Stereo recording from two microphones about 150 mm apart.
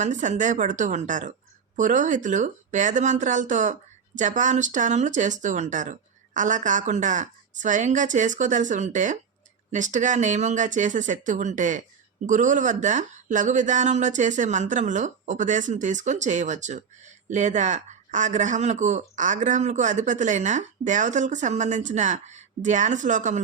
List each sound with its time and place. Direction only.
0.0 s speech: 55° right (ahead or behind)